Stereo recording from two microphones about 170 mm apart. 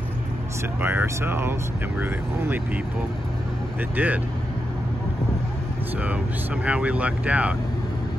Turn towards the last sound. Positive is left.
turn(degrees=-10)  # may be behind; listen again after turning